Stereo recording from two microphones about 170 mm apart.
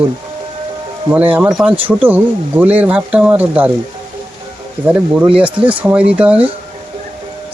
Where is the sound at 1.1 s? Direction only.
10° right (ahead or behind).